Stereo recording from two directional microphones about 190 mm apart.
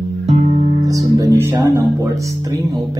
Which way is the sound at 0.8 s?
20° right (ahead or behind).